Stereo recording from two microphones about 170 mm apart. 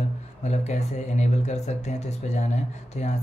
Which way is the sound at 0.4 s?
40° left (ahead or behind).